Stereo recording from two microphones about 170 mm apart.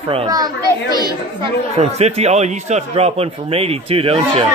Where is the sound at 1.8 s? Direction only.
40° right (ahead or behind).